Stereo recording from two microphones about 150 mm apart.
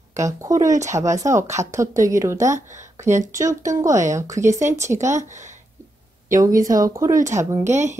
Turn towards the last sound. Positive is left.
turn(degrees=-50)  # may be behind; listen again after turning